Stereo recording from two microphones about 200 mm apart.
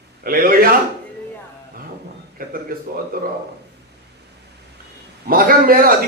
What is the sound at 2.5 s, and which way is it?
Speech, 45° right (ahead or behind).